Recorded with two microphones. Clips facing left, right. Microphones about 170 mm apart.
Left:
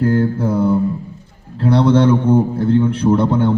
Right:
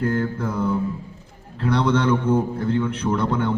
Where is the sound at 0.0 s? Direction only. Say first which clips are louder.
Left 7 dB; 30° left (ahead or behind).